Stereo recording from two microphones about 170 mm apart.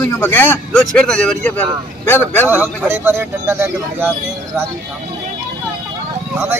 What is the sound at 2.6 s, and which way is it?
A man's voice, 15° right (ahead or behind).